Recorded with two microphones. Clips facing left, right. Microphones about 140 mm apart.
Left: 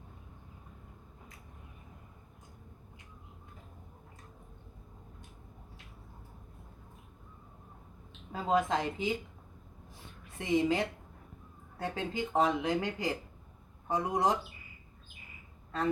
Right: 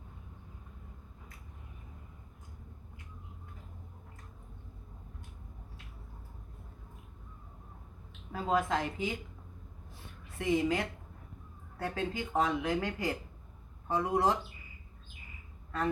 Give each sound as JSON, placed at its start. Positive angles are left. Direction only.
{"t": 8.3, "sound": "speech", "side_deg": 20}
{"t": 10.3, "sound": "speech", "side_deg": 20}